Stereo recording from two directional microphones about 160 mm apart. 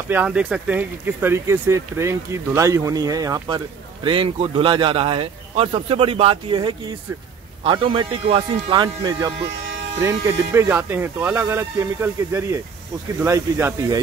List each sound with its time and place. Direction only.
0.1 s speech: 10° right (ahead or behind)